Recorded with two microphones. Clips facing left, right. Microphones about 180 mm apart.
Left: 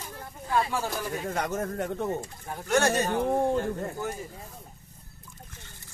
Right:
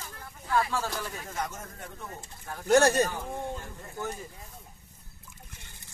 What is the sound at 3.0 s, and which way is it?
Speech, 70° left (ahead or behind).